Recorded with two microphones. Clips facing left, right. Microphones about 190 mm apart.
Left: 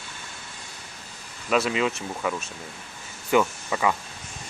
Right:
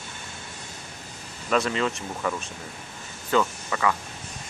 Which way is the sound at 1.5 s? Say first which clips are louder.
Left 1 dB; 10° left (ahead or behind).